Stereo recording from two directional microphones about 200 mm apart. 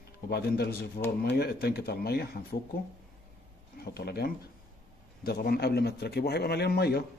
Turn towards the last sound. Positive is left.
turn(degrees=55)  # may be behind; listen again after turning